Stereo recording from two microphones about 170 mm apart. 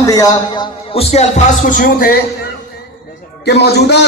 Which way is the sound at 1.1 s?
45° left (ahead or behind).